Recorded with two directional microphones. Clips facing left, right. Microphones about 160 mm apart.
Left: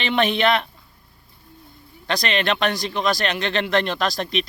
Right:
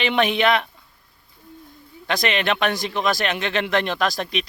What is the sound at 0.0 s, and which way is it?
Speech, 10° right (ahead or behind).